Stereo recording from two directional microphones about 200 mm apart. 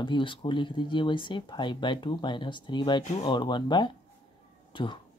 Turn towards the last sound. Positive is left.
turn(degrees=25)  # may be behind; listen again after turning